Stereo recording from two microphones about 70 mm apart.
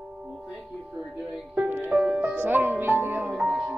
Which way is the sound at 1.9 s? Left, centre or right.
Centre.